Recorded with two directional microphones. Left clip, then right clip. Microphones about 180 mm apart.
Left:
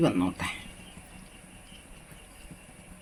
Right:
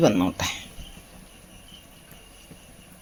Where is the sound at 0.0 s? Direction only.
45° right (ahead or behind).